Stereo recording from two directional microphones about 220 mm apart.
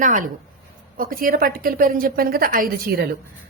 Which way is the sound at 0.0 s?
35° right (ahead or behind).